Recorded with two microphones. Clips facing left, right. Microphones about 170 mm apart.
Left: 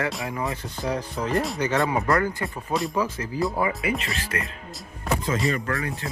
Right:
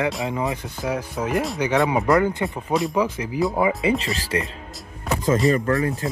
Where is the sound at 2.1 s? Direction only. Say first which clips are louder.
Right 5 dB; 20° right (ahead or behind).